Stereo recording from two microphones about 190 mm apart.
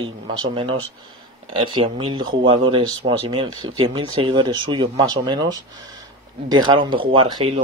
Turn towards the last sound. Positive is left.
turn(degrees=-30)  # may be behind; listen again after turning